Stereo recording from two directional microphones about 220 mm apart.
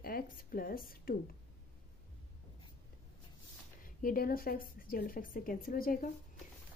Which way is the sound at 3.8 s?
40° left (ahead or behind).